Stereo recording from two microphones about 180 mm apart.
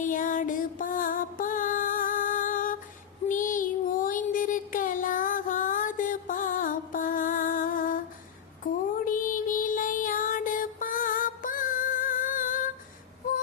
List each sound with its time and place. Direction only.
0.0 s music: 45° left (ahead or behind)
3.2 s child singing: 45° left (ahead or behind)
8.6 s music: 50° left (ahead or behind)